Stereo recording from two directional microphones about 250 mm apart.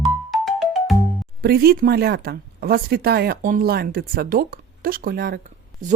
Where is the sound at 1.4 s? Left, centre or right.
Right.